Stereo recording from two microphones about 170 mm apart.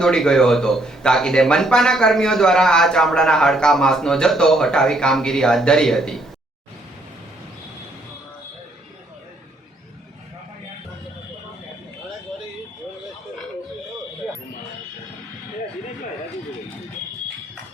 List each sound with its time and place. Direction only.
0.0 s speech: 5° left (ahead or behind)